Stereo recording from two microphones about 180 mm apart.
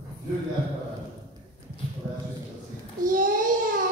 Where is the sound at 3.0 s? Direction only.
45° right (ahead or behind).